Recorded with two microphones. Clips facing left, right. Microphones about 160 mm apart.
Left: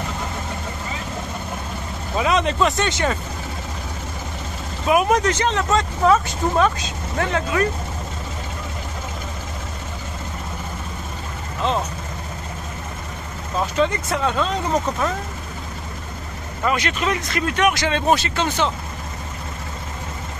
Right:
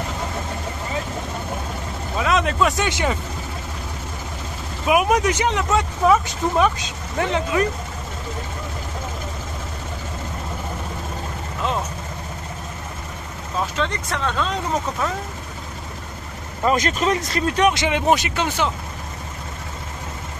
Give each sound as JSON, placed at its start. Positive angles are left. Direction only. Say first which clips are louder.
{"t": 2.1, "sound": "vehicle", "louder": "left 1 dB", "side_deg": 0}
{"t": 2.9, "sound": "speech", "louder": "even", "side_deg": -15}
{"t": 4.8, "sound": "speech", "louder": "even", "side_deg": -10}
{"t": 13.7, "sound": "speech", "louder": "left 4 dB", "side_deg": 5}
{"t": 16.6, "sound": "speech", "louder": "right 2 dB", "side_deg": -40}
{"t": 17.8, "sound": "speech", "louder": "even", "side_deg": -15}